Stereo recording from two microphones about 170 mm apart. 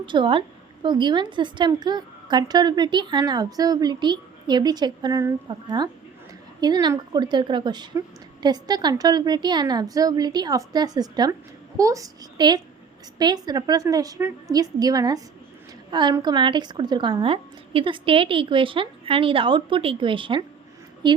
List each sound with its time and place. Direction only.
0.0 s a woman's voice: 30° right (ahead or behind)